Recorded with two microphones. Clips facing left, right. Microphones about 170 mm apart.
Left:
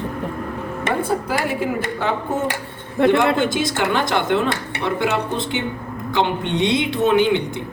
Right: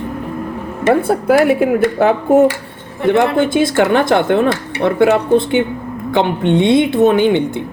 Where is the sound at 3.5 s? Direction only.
55° right (ahead or behind).